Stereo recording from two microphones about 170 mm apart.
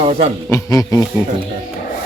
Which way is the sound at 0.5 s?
20° left (ahead or behind).